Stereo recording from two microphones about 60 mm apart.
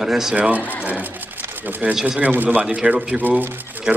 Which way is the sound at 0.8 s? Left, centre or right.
Right.